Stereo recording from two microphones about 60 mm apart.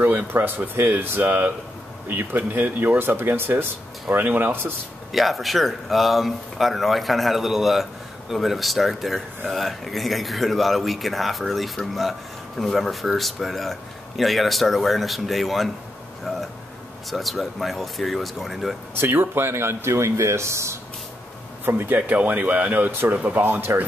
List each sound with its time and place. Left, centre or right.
0.3 s speech: right
4.5 s speech: right
5.1 s speech: centre
18.9 s speech: right
21.6 s speech: right